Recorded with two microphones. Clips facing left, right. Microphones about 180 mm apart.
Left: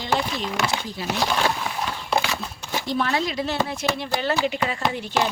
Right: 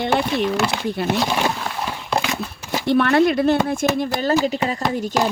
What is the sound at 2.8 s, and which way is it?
Speech, 65° right (ahead or behind).